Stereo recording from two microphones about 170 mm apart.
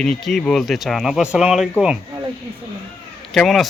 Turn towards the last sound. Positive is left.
turn(degrees=0)  # may be behind; listen again after turning